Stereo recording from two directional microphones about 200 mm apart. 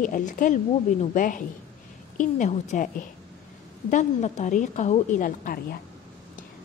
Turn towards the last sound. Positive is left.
turn(degrees=45)  # may be behind; listen again after turning